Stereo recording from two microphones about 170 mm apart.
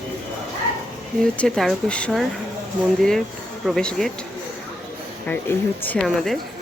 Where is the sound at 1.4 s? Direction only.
5° left (ahead or behind).